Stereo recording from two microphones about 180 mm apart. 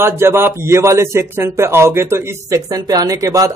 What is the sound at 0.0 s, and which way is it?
A man's voice, 15° right (ahead or behind).